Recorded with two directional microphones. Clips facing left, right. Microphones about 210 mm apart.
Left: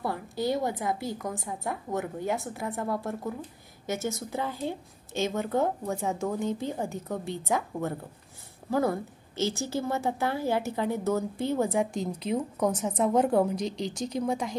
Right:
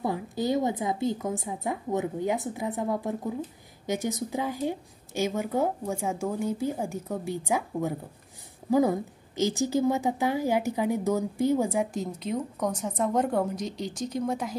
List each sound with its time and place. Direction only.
0.0 s speech: 20° right (ahead or behind)